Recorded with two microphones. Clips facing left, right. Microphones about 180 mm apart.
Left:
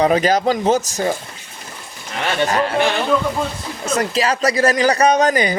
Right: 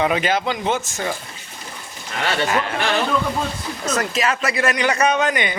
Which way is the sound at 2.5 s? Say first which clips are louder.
Left 3 dB; 35° left (ahead or behind).